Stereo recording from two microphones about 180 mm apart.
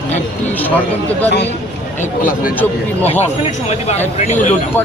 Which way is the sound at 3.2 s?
35° left (ahead or behind).